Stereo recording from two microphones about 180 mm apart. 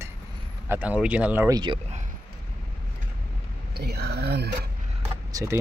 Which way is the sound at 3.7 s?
65° right (ahead or behind).